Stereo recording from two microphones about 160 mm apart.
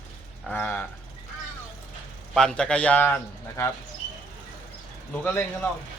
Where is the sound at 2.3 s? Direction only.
5° left (ahead or behind).